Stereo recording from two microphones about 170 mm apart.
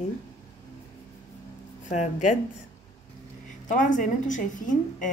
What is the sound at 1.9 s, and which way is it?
Speech, 45° left (ahead or behind).